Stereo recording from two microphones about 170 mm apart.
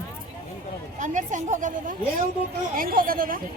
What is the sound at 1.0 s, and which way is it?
A woman's voice, 45° right (ahead or behind).